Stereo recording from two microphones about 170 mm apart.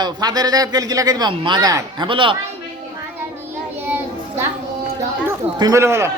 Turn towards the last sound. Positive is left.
turn(degrees=-15)  # may be behind; listen again after turning